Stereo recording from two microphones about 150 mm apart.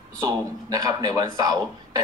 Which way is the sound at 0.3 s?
25° right (ahead or behind).